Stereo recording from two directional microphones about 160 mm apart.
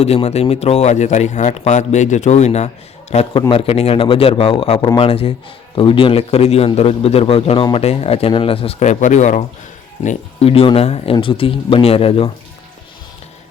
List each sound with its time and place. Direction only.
0.0 s a man's voice: 40° left (ahead or behind)